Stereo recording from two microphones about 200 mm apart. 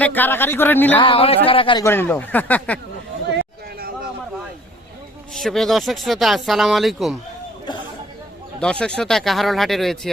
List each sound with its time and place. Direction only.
0.0 s speech: 10° left (ahead or behind)
0.9 s speech: 25° left (ahead or behind)
1.8 s speech: 10° left (ahead or behind)
3.2 s a sound: 55° right (ahead or behind)
5.3 s speech: centre (ahead or behind)
8.6 s speech: 5° left (ahead or behind)